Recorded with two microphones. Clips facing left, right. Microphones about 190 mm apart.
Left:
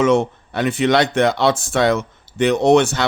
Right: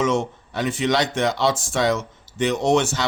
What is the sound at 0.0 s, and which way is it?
Speech, 60° left (ahead or behind).